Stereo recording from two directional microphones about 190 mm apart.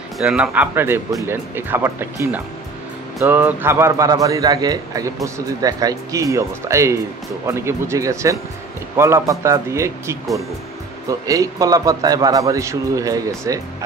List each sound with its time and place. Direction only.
0.2 s a man's voice: 5° right (ahead or behind)